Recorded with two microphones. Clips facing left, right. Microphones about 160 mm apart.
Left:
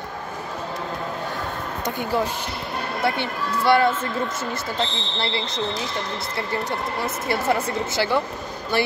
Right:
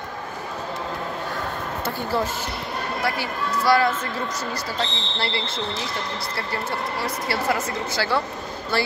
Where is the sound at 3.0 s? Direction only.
25° left (ahead or behind).